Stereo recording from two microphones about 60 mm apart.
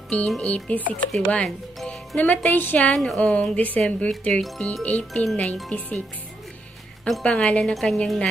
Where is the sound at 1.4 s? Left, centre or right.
Centre.